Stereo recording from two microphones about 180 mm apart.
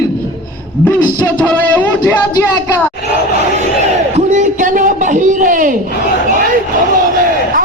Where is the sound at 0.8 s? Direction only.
10° left (ahead or behind).